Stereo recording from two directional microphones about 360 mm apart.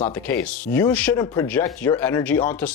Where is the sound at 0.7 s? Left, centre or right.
Centre.